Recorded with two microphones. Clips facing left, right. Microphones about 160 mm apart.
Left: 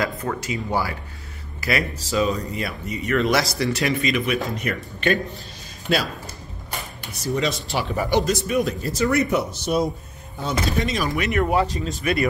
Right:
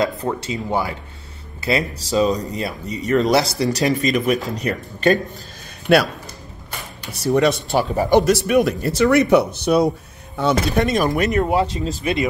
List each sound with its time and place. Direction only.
0.4 s speech: 25° right (ahead or behind)
5.9 s speech: 60° right (ahead or behind)
7.3 s speech: 60° right (ahead or behind)
7.9 s speech: 40° right (ahead or behind)
8.3 s speech: 70° right (ahead or behind)
11.0 s speech: 45° right (ahead or behind)
11.4 s speech: 25° right (ahead or behind)